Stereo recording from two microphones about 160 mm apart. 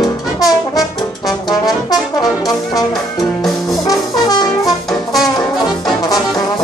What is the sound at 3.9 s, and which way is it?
Brass instrument, 25° left (ahead or behind).